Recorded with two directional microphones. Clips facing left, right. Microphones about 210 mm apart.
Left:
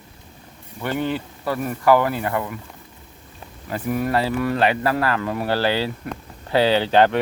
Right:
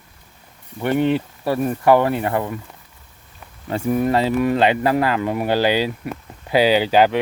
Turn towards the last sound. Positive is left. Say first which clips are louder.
# right 1 dB
turn(degrees=-5)  # may be behind; listen again after turning